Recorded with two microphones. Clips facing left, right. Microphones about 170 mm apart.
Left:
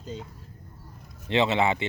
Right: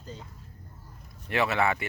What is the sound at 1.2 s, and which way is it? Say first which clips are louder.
Speech: left 3 dB; 20° left (ahead or behind).